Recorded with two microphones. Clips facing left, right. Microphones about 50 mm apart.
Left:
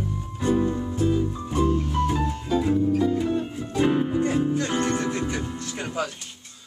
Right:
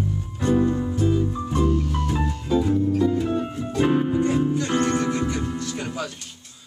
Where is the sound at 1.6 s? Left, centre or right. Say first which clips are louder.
Left 1 dB; left.